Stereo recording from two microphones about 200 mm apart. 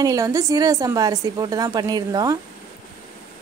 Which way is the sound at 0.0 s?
15° right (ahead or behind).